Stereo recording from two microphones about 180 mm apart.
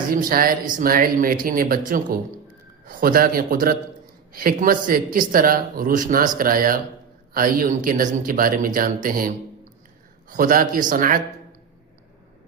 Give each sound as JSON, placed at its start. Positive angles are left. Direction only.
{"t": 0.1, "sound": "speech", "side_deg": -50}